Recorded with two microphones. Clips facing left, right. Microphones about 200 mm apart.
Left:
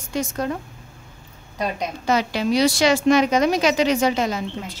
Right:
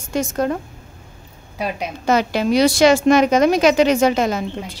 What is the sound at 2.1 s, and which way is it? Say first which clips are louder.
A woman's voice: right 4 dB; 50° right (ahead or behind).